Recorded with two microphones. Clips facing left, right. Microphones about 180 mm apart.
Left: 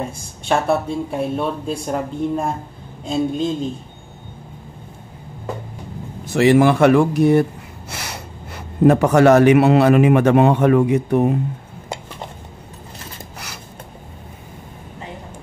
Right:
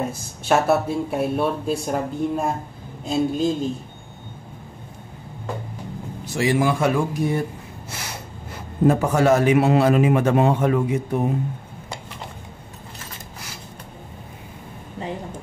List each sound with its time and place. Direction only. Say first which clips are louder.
0.0 s speech: right 1 dB; 5° right (ahead or behind)
6.3 s a man's voice: left 7 dB; 65° left (ahead or behind)